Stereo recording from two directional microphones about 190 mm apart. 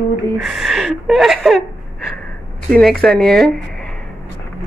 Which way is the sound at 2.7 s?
Centre (ahead or behind).